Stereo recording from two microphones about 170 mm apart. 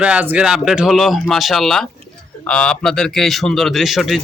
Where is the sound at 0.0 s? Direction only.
10° right (ahead or behind).